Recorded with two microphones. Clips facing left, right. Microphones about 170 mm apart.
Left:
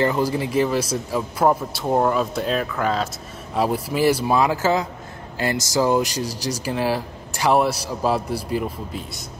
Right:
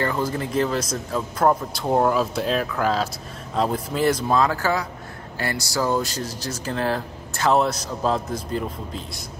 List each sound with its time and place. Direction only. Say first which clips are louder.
0.0 s a man's voice: left 4 dB; 15° left (ahead or behind)